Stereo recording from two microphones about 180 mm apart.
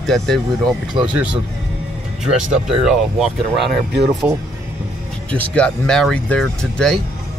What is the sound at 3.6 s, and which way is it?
Speech, 70° right (ahead or behind).